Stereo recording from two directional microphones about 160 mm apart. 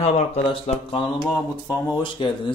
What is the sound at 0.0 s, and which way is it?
Speech, 40° left (ahead or behind).